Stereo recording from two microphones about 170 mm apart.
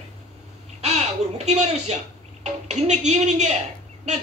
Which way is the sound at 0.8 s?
40° right (ahead or behind).